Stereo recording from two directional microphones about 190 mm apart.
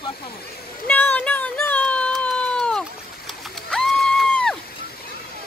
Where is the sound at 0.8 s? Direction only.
10° left (ahead or behind).